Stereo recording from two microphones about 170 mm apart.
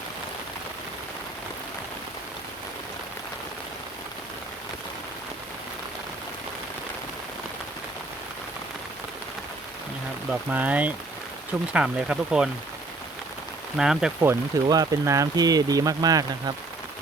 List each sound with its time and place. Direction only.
10.5 s speech: 10° right (ahead or behind)
13.7 s speech: 5° right (ahead or behind)
14.3 s speech: 20° right (ahead or behind)